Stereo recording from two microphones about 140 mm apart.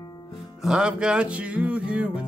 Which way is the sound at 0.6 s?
5° right (ahead or behind).